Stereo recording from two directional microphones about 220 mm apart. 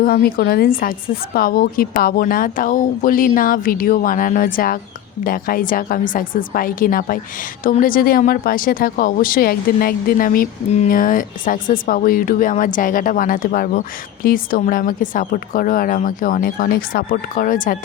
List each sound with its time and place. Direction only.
0.0 s speech: 40° left (ahead or behind)